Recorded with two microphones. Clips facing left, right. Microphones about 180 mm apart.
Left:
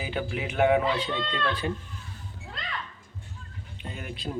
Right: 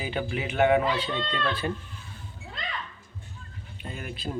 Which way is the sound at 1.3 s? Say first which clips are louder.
Even; 15° left (ahead or behind).